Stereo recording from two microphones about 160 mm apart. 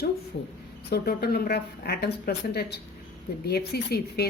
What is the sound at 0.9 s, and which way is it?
A woman's voice, 85° left.